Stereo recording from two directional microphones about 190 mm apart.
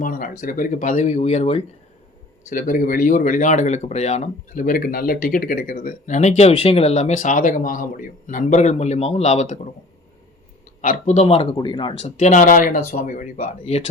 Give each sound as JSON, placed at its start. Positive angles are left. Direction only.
{"t": 0.0, "sound": "speech", "side_deg": 50}
{"t": 2.5, "sound": "speech", "side_deg": 45}
{"t": 10.8, "sound": "speech", "side_deg": 45}